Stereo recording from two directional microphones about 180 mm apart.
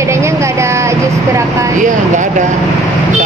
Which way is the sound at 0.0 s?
15° right (ahead or behind).